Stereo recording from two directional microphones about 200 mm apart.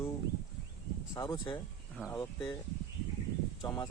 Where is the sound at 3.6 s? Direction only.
20° left (ahead or behind).